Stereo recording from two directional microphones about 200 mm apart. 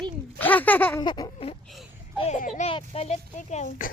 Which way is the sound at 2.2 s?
35° left (ahead or behind).